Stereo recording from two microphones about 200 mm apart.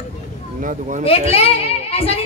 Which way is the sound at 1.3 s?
30° left (ahead or behind).